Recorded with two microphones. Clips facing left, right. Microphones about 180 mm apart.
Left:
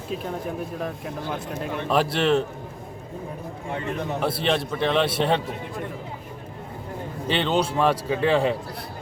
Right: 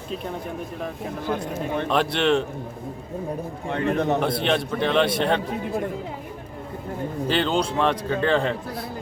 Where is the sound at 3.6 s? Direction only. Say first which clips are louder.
Right 6 dB; 70° right (ahead or behind).